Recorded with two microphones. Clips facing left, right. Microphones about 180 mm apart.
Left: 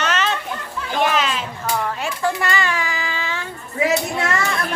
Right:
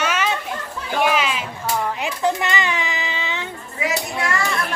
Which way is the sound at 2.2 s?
20° right (ahead or behind).